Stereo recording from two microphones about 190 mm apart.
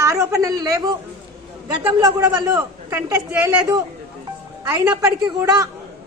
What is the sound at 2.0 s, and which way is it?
A man's voice, 20° right (ahead or behind).